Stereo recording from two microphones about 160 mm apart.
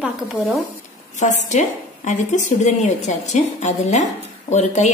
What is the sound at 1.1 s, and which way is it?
A woman's voice, 50° left (ahead or behind).